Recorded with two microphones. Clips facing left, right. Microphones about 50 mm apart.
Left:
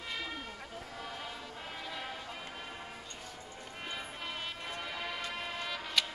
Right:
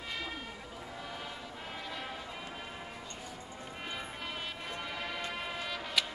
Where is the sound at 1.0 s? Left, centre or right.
Centre.